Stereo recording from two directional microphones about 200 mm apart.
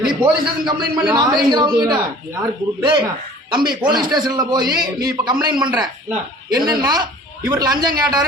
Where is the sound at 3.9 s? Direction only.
20° right (ahead or behind).